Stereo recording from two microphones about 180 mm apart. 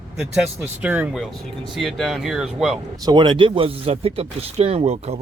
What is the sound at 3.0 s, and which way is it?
Speech, 25° right (ahead or behind).